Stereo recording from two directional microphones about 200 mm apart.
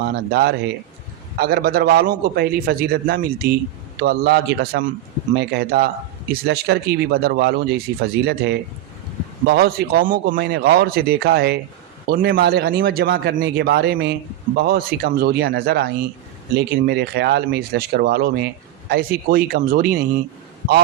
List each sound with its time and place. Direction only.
0.0 s speech: 50° right (ahead or behind)